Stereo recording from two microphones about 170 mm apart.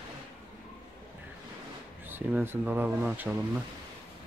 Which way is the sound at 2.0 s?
10° right (ahead or behind).